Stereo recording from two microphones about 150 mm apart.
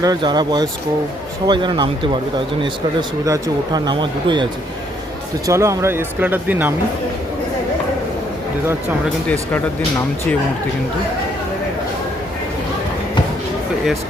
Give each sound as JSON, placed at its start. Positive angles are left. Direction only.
{"t": 0.0, "sound": "speech", "side_deg": -25}
{"t": 3.2, "sound": "speech", "side_deg": -25}
{"t": 5.5, "sound": "speech", "side_deg": -20}